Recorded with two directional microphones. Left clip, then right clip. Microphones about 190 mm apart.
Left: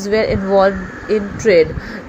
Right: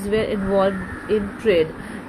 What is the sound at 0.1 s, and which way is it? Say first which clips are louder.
A woman's voice: left 6 dB; 15° left (ahead or behind).